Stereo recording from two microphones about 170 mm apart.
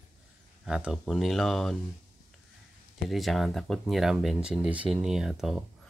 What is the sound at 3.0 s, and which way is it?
Speech, centre (ahead or behind).